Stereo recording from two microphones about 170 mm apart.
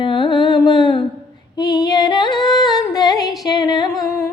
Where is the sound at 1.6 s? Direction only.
20° left (ahead or behind).